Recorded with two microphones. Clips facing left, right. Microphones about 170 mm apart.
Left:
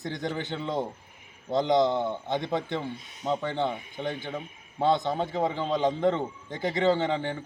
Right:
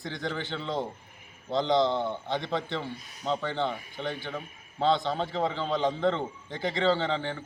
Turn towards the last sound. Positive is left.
turn(degrees=15)  # may be behind; listen again after turning